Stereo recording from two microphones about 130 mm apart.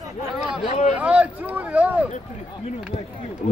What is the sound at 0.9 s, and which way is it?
Speech, 10° right (ahead or behind).